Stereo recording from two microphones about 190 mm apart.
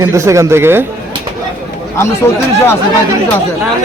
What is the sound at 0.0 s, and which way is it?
Speech, 15° right (ahead or behind).